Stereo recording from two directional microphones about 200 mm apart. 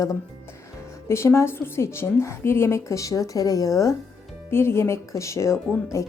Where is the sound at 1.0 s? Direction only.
15° left (ahead or behind).